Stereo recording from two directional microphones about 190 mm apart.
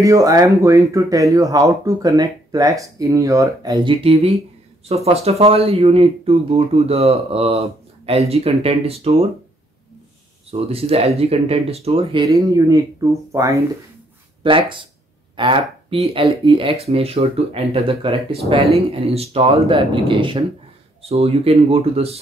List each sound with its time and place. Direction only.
0.0 s speech: 15° right (ahead or behind)
10.5 s speech: 30° right (ahead or behind)
12.3 s speech: 15° right (ahead or behind)
14.4 s speech: 25° right (ahead or behind)